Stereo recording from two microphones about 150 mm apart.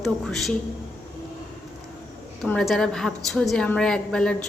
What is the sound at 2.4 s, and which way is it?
A woman's voice, 5° left (ahead or behind).